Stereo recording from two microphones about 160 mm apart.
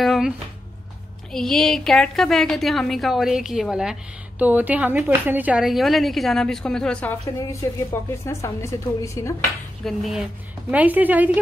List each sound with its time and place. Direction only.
0.0 s a sound: centre (ahead or behind)
1.3 s a woman's voice: centre (ahead or behind)
7.9 s a woman's voice: 15° left (ahead or behind)
9.8 s a woman's voice: centre (ahead or behind)